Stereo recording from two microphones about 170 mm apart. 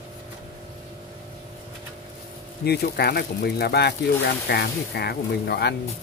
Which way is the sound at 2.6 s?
70° left (ahead or behind).